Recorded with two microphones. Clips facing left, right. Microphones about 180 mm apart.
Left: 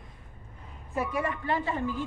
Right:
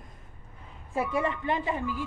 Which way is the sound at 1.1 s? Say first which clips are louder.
Right 2 dB; 20° right (ahead or behind).